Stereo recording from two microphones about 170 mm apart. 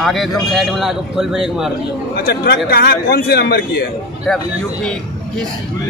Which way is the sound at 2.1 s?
70° left (ahead or behind).